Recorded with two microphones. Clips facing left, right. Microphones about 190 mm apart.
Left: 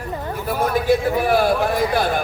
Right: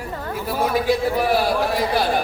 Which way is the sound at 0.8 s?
50° left (ahead or behind).